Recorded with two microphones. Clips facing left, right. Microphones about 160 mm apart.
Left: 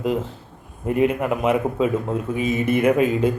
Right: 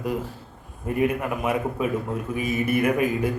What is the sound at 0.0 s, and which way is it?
Speech, 20° left (ahead or behind).